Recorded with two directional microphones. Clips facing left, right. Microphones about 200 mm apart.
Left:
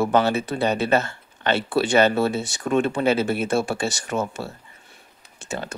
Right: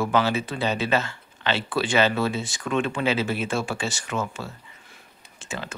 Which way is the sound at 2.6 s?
45° left (ahead or behind).